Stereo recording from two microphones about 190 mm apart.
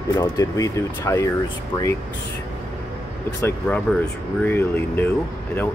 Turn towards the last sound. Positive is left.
turn(degrees=10)  # may be behind; listen again after turning